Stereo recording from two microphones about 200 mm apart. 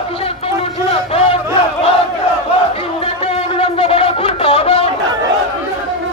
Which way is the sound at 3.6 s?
25° left (ahead or behind).